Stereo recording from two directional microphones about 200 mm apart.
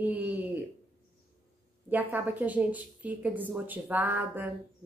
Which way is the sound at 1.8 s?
10° right (ahead or behind).